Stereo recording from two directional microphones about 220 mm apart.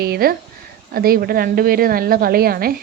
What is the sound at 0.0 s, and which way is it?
A woman's voice, 45° right (ahead or behind).